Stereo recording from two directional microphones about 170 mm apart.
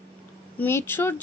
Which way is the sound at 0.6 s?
15° left (ahead or behind).